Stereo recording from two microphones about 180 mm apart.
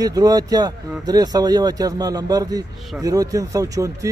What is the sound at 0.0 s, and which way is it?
A man's voice, 20° right (ahead or behind).